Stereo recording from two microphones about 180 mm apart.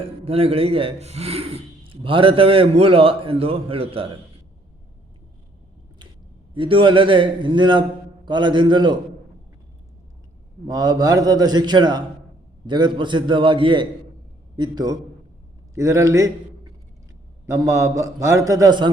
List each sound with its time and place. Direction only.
0.3 s a man's voice: 30° right (ahead or behind)
6.5 s a man's voice: 30° right (ahead or behind)
10.7 s a man's voice: 20° right (ahead or behind)